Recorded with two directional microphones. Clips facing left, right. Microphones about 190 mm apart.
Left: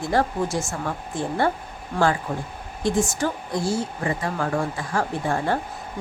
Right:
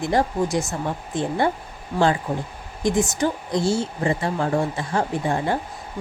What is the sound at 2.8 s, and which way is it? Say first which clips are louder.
A woman's voice: right 2 dB; 20° right (ahead or behind).